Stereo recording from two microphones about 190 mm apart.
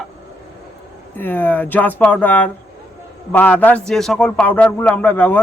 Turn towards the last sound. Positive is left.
turn(degrees=10)  # may be behind; listen again after turning